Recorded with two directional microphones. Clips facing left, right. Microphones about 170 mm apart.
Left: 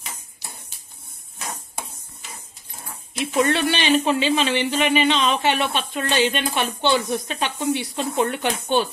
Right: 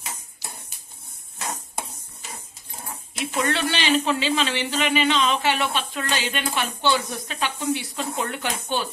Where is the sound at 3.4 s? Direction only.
20° left (ahead or behind).